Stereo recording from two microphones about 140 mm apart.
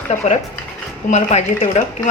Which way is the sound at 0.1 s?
50° left (ahead or behind).